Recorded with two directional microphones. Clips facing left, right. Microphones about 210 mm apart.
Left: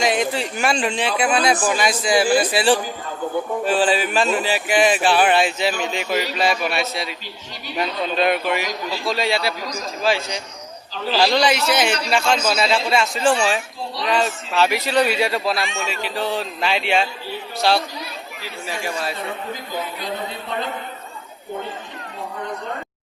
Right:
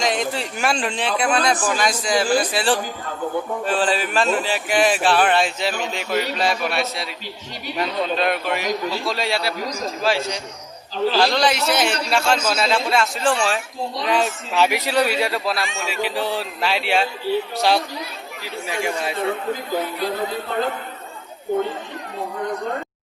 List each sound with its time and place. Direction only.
0.0 s speech: 5° left (ahead or behind)
11.1 s speech: centre (ahead or behind)
14.1 s speech: 15° right (ahead or behind)
14.9 s speech: centre (ahead or behind)
15.9 s speech: 10° right (ahead or behind)
17.6 s speech: 15° right (ahead or behind)